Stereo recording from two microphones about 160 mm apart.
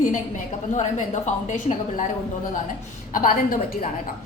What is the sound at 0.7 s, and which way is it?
A woman's voice, 50° left (ahead or behind).